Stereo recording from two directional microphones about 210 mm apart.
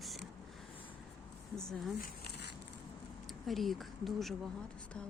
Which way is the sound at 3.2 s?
Centre (ahead or behind).